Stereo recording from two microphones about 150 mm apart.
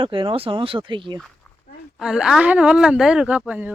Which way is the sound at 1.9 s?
5° right (ahead or behind).